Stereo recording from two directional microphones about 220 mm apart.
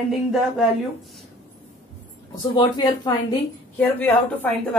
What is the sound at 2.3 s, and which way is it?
Speech, 20° left (ahead or behind).